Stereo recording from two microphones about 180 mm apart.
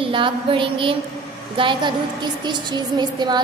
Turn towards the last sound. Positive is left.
turn(degrees=-25)  # may be behind; listen again after turning